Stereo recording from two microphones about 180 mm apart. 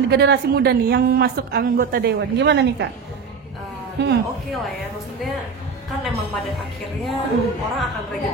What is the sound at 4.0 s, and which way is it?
Speech, 70° right (ahead or behind).